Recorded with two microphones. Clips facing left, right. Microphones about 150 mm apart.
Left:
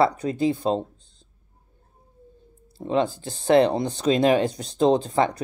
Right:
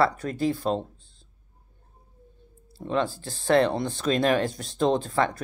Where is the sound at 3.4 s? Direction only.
20° left (ahead or behind).